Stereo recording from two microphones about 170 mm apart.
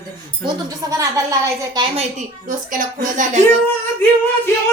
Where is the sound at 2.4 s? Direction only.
50° right (ahead or behind).